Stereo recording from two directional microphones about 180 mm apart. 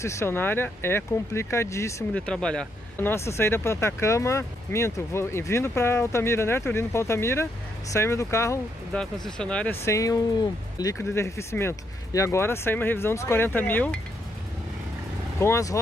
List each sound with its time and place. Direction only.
0.0 s speech: 15° left (ahead or behind)
2.2 s speech: 5° left (ahead or behind)
8.9 s speech: 5° left (ahead or behind)
15.4 s speech: 15° left (ahead or behind)